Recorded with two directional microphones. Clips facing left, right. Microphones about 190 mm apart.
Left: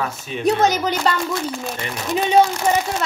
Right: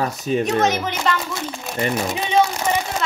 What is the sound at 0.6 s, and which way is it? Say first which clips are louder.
Speech: left 2 dB; 35° left (ahead or behind).